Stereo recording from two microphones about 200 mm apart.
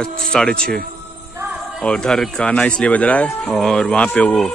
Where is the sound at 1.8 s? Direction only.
5° left (ahead or behind).